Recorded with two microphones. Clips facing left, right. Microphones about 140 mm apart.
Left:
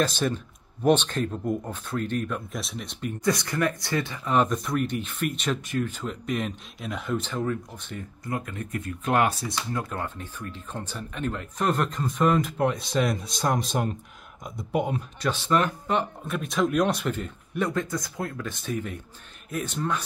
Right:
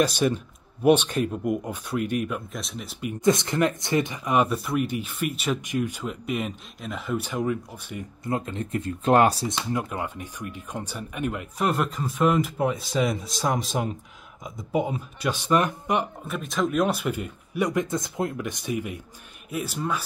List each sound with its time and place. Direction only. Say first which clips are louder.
0.0 s speech: right 3 dB; 15° right (ahead or behind)
3.3 s speech: right 4 dB; 20° right (ahead or behind); by 7.2 s centre (ahead or behind)
7.2 s speech: right 4 dB; 10° right (ahead or behind)
8.2 s speech: right 4 dB; 25° right (ahead or behind)
9.5 s speech: right 3 dB; 20° right (ahead or behind); by 15.3 s 5° right (ahead or behind)
15.3 s speech: right 2 dB; 15° right (ahead or behind)
16.3 s speech: left 1 dB; centre (ahead or behind)